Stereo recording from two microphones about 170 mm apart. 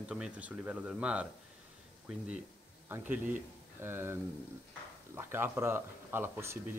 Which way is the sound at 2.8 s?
10° right (ahead or behind).